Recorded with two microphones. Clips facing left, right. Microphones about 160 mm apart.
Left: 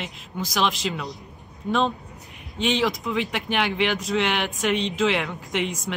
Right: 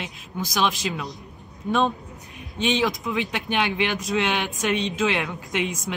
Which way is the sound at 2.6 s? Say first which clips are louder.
Even; 20° right (ahead or behind).